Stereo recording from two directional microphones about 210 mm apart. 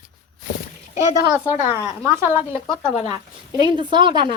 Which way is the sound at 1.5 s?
30° left (ahead or behind).